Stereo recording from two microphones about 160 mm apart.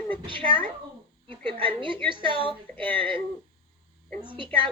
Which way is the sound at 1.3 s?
30° right (ahead or behind).